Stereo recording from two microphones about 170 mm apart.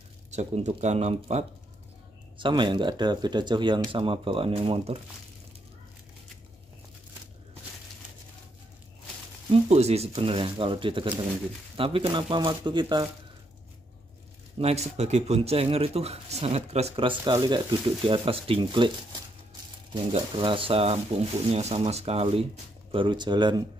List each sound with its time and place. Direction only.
0.3 s speech: 40° right (ahead or behind)
9.5 s speech: 40° right (ahead or behind)
14.6 s speech: 40° right (ahead or behind)
17.1 s speech: 20° right (ahead or behind)
19.9 s speech: 30° right (ahead or behind)